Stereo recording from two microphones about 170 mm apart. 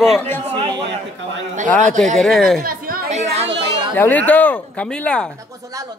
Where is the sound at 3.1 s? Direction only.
40° right (ahead or behind).